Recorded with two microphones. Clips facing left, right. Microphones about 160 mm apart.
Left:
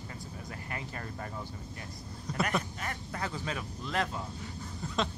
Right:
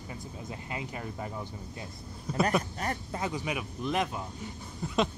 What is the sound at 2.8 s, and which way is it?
Speech, 35° right (ahead or behind).